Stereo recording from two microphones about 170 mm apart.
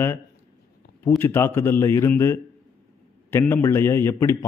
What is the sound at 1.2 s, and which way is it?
A man's voice, 15° left (ahead or behind).